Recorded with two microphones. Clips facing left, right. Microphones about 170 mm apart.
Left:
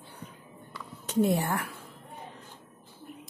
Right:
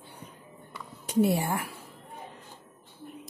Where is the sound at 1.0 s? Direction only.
10° right (ahead or behind).